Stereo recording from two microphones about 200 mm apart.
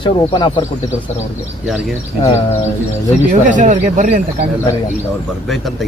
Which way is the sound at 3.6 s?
40° right (ahead or behind).